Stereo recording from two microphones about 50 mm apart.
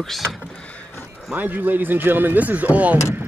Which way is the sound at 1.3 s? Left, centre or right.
Right.